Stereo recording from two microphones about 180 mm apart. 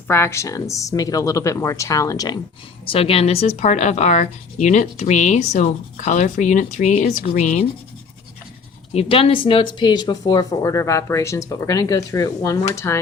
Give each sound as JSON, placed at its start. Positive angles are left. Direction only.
{"t": 0.1, "sound": "speech", "side_deg": 15}
{"t": 2.8, "sound": "speech", "side_deg": 30}
{"t": 8.9, "sound": "speech", "side_deg": 35}